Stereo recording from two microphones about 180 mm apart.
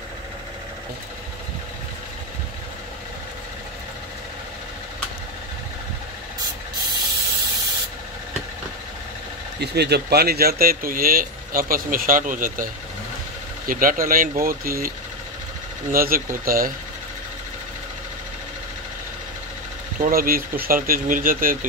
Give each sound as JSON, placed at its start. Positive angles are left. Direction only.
{"t": 9.6, "sound": "speech", "side_deg": -65}
{"t": 13.7, "sound": "speech", "side_deg": -50}
{"t": 15.9, "sound": "speech", "side_deg": -55}
{"t": 20.0, "sound": "speech", "side_deg": -55}